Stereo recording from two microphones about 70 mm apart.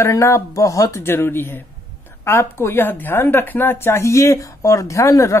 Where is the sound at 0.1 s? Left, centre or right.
Left.